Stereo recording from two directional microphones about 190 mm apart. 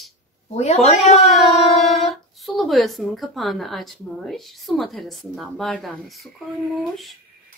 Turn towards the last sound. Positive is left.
turn(degrees=0)  # may be behind; listen again after turning